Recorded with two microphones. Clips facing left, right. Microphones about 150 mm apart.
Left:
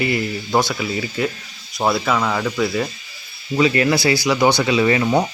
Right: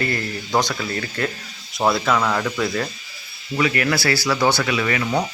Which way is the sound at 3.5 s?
25° left (ahead or behind).